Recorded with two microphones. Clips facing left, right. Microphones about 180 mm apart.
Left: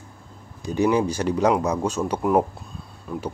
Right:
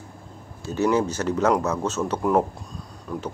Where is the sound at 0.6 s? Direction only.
15° left (ahead or behind).